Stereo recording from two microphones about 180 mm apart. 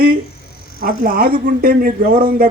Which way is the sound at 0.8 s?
55° right (ahead or behind).